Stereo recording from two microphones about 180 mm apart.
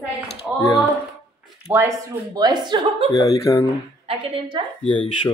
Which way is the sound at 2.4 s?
25° right (ahead or behind).